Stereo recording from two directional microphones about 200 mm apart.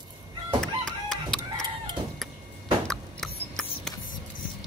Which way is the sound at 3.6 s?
Centre (ahead or behind).